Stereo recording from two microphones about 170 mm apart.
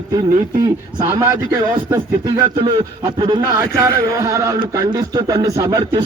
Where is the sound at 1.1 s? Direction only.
15° right (ahead or behind).